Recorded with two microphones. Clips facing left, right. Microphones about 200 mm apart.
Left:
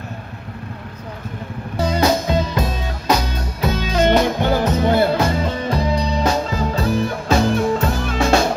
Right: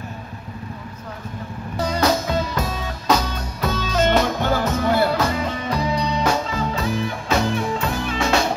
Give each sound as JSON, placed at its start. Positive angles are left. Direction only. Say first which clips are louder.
{"t": 2.0, "sound": "music", "louder": "left 2 dB", "side_deg": 20}